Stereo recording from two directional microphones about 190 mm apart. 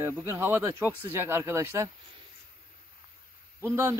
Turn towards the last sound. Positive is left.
turn(degrees=-15)  # may be behind; listen again after turning